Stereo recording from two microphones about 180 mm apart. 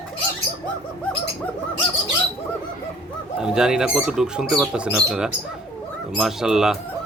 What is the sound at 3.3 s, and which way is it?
Speech, 5° right (ahead or behind).